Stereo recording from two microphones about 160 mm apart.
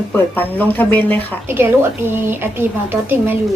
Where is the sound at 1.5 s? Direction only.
15° right (ahead or behind).